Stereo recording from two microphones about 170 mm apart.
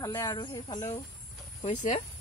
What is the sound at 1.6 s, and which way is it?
Speech, 45° left (ahead or behind).